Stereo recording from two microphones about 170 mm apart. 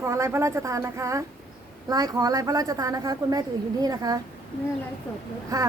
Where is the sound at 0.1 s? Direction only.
15° right (ahead or behind).